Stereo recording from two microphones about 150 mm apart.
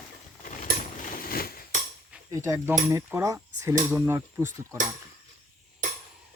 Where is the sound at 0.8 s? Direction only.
70° left (ahead or behind).